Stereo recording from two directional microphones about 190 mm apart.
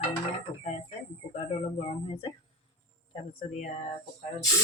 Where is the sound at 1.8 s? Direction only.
30° left (ahead or behind).